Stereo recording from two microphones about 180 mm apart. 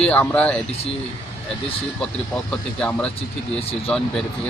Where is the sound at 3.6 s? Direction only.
35° left (ahead or behind).